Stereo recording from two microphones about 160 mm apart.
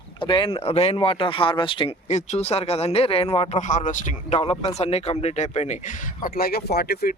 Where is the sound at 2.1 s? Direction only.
45° left (ahead or behind); by 7.1 s 75° left (ahead or behind).